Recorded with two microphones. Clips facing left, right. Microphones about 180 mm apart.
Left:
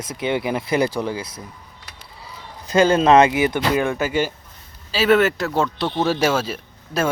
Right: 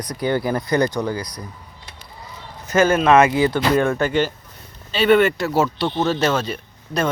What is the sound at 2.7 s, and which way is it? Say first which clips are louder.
Speech: left 1 dB; 15° left (ahead or behind).